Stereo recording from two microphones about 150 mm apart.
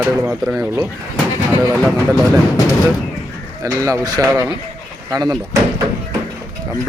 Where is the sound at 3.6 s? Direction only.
20° right (ahead or behind).